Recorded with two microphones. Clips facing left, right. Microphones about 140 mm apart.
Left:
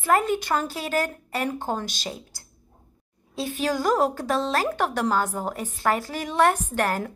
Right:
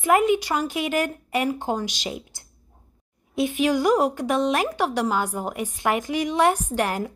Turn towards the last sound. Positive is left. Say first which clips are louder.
# right 1 dB
turn(degrees=-15)  # may be behind; listen again after turning